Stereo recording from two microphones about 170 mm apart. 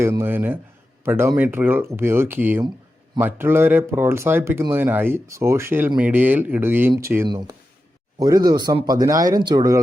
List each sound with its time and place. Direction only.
0.0 s speech: 15° right (ahead or behind)